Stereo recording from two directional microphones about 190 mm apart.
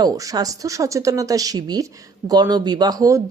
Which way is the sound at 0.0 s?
20° right (ahead or behind).